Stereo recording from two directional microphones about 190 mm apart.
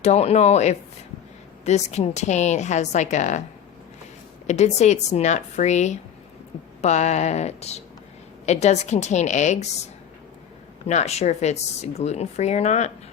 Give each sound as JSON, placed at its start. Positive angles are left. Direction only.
{"t": 0.0, "sound": "speech", "side_deg": 35}
{"t": 4.4, "sound": "speech", "side_deg": 35}
{"t": 10.8, "sound": "speech", "side_deg": 35}